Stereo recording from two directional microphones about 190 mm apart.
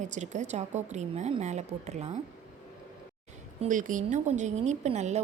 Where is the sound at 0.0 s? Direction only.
40° right (ahead or behind).